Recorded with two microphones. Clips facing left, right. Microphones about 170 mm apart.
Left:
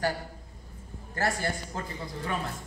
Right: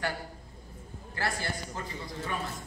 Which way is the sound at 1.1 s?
45° left (ahead or behind).